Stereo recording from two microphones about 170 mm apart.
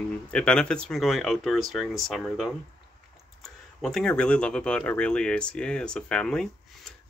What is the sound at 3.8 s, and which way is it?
Speech, 5° left (ahead or behind).